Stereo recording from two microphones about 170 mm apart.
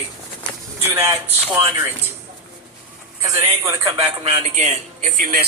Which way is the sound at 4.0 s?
35° right (ahead or behind).